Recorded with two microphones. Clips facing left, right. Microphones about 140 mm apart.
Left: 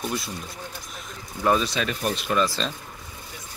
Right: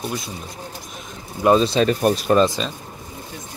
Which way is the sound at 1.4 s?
30° right (ahead or behind).